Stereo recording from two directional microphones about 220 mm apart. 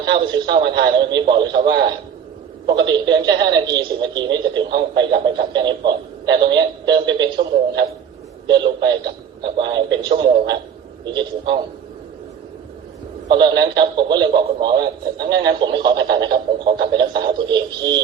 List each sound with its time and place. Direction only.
0.0 s a man's voice: 20° right (ahead or behind)
13.3 s a man's voice: 20° right (ahead or behind)